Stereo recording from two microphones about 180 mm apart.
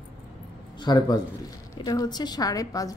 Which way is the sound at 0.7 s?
25° left (ahead or behind).